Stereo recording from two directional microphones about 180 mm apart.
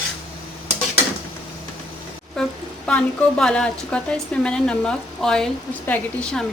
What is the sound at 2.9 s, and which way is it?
A woman's voice, 5° left (ahead or behind).